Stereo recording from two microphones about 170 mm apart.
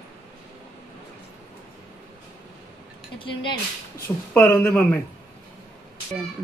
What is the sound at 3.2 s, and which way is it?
Speech, 30° left (ahead or behind).